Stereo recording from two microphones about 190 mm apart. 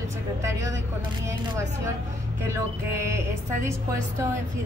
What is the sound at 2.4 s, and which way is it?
A woman's voice, 15° right (ahead or behind).